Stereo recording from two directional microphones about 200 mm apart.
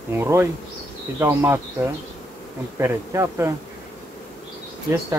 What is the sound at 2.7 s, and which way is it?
Speech, 15° right (ahead or behind).